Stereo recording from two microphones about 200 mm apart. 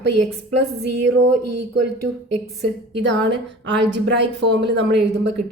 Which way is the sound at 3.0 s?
65° right (ahead or behind).